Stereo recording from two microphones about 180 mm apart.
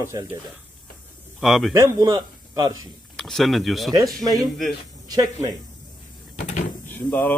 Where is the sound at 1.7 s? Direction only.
15° right (ahead or behind).